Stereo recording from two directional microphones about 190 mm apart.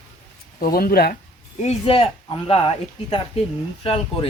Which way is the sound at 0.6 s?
50° left (ahead or behind).